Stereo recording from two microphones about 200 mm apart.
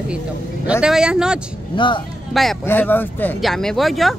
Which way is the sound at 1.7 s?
25° left (ahead or behind).